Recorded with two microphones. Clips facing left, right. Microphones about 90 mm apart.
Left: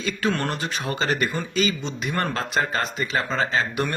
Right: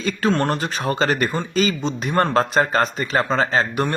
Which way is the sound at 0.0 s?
35° right (ahead or behind).